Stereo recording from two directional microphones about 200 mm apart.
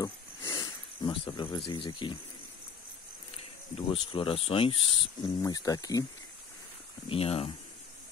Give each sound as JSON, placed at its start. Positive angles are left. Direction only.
{"t": 0.0, "sound": "snake", "side_deg": 20}
{"t": 3.7, "sound": "speech", "side_deg": 25}
{"t": 7.1, "sound": "speech", "side_deg": 30}